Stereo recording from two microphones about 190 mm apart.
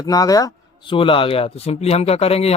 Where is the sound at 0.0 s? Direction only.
20° left (ahead or behind).